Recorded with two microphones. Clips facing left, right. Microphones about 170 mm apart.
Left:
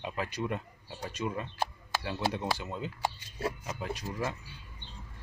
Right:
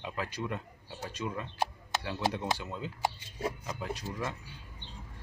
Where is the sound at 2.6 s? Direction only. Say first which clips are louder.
Even; 15° left (ahead or behind).